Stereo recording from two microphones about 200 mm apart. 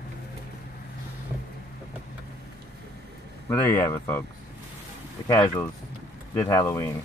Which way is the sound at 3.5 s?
15° left (ahead or behind).